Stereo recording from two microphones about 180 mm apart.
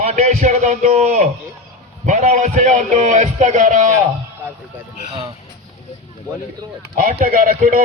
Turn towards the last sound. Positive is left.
turn(degrees=-50)  # may be behind; listen again after turning